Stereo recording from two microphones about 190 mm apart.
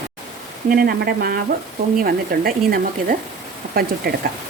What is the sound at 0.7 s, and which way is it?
Speech, 55° right (ahead or behind).